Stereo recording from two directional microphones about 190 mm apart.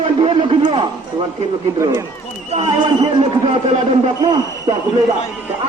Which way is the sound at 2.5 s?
30° right (ahead or behind).